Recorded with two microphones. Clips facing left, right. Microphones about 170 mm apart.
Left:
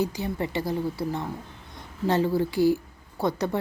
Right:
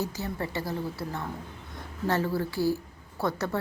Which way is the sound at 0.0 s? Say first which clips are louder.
Left 5 dB; 15° left (ahead or behind).